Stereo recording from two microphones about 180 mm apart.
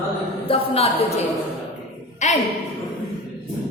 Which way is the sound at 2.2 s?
40° left (ahead or behind).